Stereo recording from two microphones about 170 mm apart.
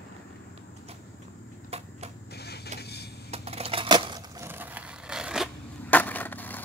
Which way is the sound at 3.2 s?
35° right (ahead or behind).